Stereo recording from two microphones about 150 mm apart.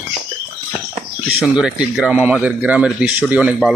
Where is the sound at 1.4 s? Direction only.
5° right (ahead or behind).